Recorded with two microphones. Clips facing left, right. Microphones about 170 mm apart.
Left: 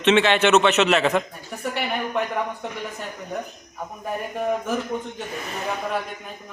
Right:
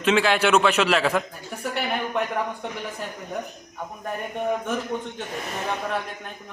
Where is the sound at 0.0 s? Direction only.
5° right (ahead or behind).